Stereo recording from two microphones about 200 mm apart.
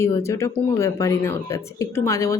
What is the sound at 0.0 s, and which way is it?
Speech, 15° left (ahead or behind).